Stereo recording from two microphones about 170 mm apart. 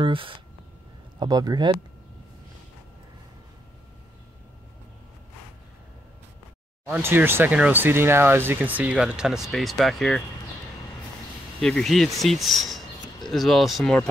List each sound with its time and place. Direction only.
0.0 s speech: 30° right (ahead or behind)
6.9 s speech: 10° right (ahead or behind)
11.6 s speech: centre (ahead or behind)